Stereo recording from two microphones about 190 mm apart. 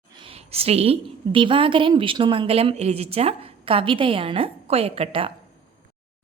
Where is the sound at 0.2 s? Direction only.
30° right (ahead or behind).